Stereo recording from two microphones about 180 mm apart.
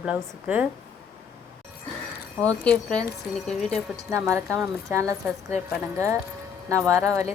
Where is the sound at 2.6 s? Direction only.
5° left (ahead or behind).